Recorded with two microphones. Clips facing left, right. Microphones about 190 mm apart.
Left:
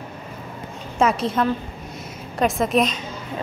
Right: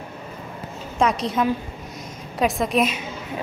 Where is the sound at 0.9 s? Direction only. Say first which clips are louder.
Left 1 dB; centre (ahead or behind).